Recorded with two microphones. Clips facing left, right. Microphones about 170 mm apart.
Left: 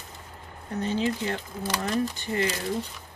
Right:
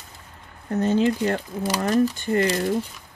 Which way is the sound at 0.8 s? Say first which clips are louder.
Right 7 dB; 50° right (ahead or behind).